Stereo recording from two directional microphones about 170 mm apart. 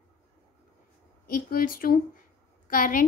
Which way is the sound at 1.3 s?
55° left (ahead or behind).